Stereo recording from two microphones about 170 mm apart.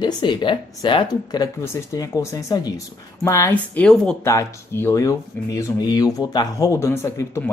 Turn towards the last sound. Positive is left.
turn(degrees=15)  # may be behind; listen again after turning